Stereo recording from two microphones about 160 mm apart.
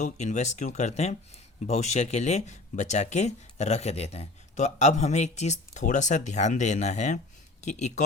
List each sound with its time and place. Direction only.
0.0 s speech: 45° left (ahead or behind)